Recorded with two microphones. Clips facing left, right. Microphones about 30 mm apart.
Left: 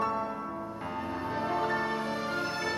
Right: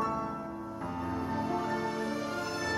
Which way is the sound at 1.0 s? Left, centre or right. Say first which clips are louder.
Left 1 dB; left.